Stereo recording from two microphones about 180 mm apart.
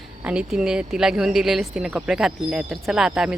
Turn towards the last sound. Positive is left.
turn(degrees=-5)  # may be behind; listen again after turning